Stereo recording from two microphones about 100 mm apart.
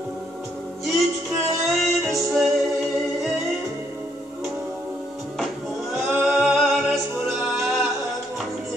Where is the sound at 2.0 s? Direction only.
Centre (ahead or behind).